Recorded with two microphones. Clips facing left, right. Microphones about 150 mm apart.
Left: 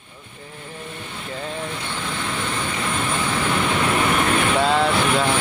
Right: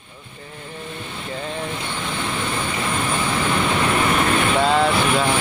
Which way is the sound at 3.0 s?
5° right (ahead or behind).